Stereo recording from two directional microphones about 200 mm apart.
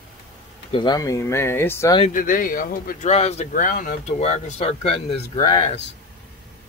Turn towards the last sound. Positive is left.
turn(degrees=30)  # may be behind; listen again after turning